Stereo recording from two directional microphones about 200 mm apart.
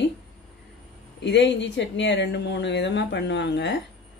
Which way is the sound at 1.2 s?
60° left (ahead or behind).